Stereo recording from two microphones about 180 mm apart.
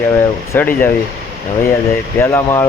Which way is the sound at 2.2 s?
15° left (ahead or behind).